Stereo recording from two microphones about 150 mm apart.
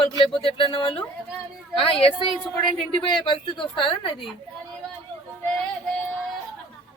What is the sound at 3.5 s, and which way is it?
Speech, 35° left (ahead or behind).